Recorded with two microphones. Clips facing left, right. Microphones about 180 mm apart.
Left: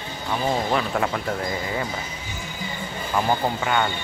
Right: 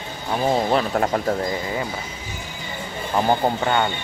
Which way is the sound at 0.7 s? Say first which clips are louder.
Right 3 dB; 40° right (ahead or behind).